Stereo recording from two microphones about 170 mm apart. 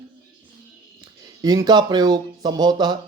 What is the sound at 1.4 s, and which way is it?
Speech, 25° right (ahead or behind).